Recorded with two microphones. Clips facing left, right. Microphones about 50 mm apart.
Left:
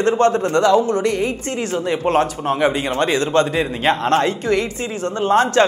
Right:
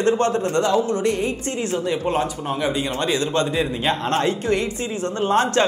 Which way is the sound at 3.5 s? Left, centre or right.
Left.